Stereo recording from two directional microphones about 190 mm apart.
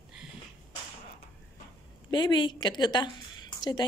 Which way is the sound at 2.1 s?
25° left (ahead or behind).